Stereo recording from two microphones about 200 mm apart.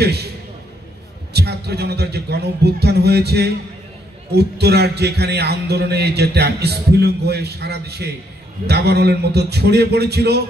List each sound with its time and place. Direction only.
0.0 s a man's voice: 55° right (ahead or behind)
1.3 s a man's voice: 55° right (ahead or behind)